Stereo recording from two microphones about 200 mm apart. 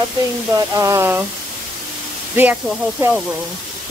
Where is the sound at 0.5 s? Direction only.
15° right (ahead or behind).